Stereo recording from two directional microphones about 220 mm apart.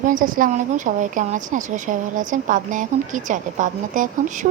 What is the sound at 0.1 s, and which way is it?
A woman's voice, 40° right (ahead or behind).